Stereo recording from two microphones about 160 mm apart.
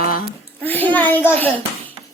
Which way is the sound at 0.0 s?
65° left (ahead or behind).